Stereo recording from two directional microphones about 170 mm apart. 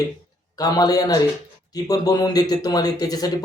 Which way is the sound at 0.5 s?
20° left (ahead or behind).